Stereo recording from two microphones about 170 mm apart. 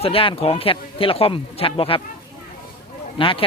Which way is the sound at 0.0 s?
35° left (ahead or behind).